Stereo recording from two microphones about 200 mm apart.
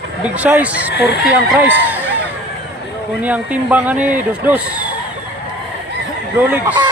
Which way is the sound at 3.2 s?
5° right (ahead or behind).